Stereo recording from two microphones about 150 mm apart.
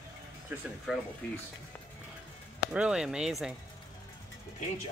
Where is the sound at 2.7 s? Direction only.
5° right (ahead or behind).